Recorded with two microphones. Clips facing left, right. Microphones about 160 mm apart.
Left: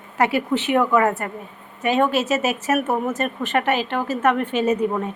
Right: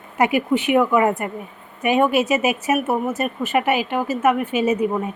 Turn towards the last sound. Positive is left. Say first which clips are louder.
# right 1 dB
turn(degrees=-10)  # may be behind; listen again after turning